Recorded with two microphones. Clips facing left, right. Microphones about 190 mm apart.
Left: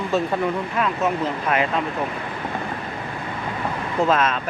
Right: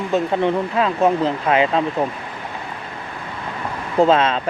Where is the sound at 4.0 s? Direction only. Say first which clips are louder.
Right 5 dB; 30° right (ahead or behind).